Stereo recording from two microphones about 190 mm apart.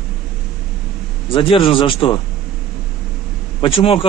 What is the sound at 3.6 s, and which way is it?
Speech, 30° left (ahead or behind).